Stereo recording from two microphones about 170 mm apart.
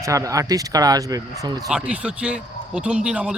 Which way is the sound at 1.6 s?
5° right (ahead or behind).